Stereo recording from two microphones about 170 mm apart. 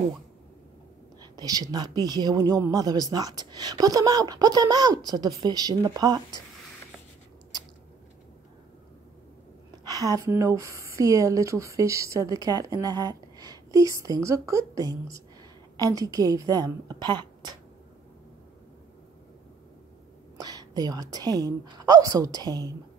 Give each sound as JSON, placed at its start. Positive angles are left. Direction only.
{"t": 1.3, "sound": "speech", "side_deg": -20}
{"t": 9.8, "sound": "speech", "side_deg": -20}
{"t": 20.3, "sound": "a woman's voice", "side_deg": -25}